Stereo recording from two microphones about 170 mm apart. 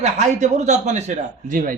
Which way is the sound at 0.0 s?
40° right (ahead or behind).